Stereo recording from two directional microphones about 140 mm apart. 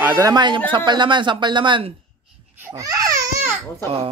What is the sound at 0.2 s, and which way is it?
Speech, 30° right (ahead or behind).